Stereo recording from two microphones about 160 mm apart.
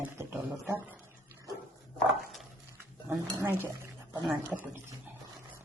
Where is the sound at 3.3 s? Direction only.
15° right (ahead or behind).